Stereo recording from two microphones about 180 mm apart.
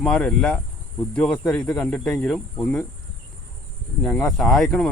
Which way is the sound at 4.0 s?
5° left (ahead or behind).